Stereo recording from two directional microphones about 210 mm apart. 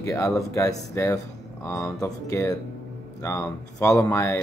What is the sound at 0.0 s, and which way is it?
Speech, 15° left (ahead or behind).